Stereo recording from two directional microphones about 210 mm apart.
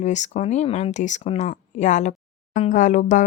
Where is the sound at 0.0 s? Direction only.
35° left (ahead or behind).